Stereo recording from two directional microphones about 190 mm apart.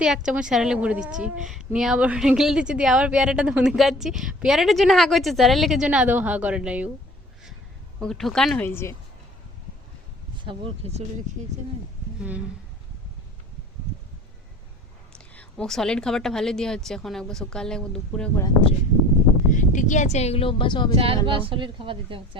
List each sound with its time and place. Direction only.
0.0 s a woman's voice: 5° right (ahead or behind)
8.0 s a woman's voice: centre (ahead or behind)
10.4 s a woman's voice: 25° right (ahead or behind)
15.1 s a woman's voice: 5° left (ahead or behind)
19.5 s speech: 40° left (ahead or behind); by 20.9 s 25° left (ahead or behind)
20.9 s a woman's voice: 30° right (ahead or behind)